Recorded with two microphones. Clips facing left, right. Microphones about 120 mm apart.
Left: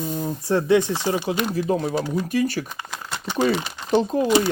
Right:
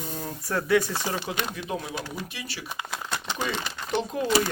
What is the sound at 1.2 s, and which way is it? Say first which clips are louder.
Speech: left 9 dB; 35° left (ahead or behind).